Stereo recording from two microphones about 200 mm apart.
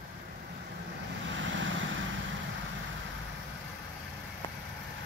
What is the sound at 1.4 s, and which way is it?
Vehicle, 70° right (ahead or behind).